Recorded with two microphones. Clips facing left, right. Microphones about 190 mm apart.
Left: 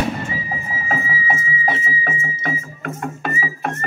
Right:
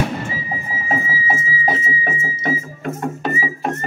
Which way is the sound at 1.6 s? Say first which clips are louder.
Right 1 dB; 30° right (ahead or behind).